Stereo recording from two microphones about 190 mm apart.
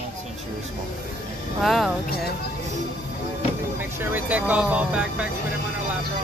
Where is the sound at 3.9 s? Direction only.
10° right (ahead or behind).